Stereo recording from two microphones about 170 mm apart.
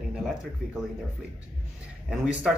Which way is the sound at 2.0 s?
5° right (ahead or behind).